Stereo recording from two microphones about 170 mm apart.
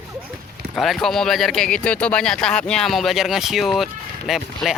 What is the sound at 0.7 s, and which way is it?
Speech, centre (ahead or behind).